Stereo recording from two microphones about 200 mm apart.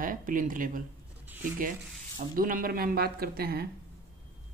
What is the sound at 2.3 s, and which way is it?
Speech, 45° right (ahead or behind).